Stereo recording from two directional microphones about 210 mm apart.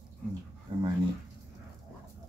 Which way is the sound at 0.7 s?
25° right (ahead or behind).